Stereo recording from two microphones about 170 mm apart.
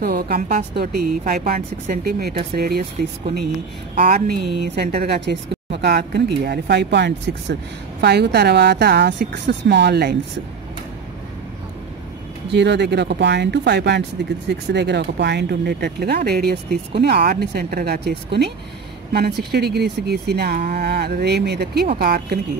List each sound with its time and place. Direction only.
0.0 s speech: 65° right (ahead or behind)
3.9 s speech: 55° right (ahead or behind); by 7.5 s 90° right
8.0 s speech: 75° right (ahead or behind)
12.4 s speech: 90° right; by 22.4 s 65° right (ahead or behind)